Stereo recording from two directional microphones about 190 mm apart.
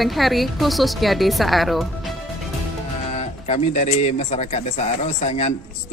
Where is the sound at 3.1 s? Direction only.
35° left (ahead or behind).